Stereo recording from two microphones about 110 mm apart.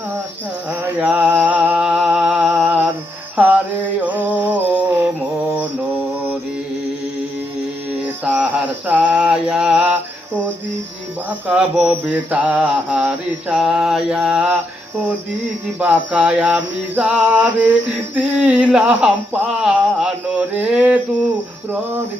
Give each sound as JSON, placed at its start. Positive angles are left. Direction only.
{"t": 0.7, "sound": "a sound", "side_deg": -15}
{"t": 3.4, "sound": "mantra", "side_deg": -10}
{"t": 4.0, "sound": "a sound", "side_deg": -15}
{"t": 8.0, "sound": "mantra", "side_deg": -15}
{"t": 11.3, "sound": "mantra", "side_deg": -15}
{"t": 16.1, "sound": "mantra", "side_deg": -5}
{"t": 18.7, "sound": "speech", "side_deg": -10}